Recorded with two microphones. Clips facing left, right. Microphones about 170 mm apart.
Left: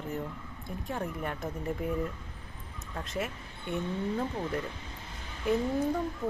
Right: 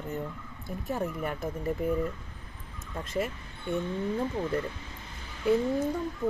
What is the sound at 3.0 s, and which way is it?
Speech, centre (ahead or behind).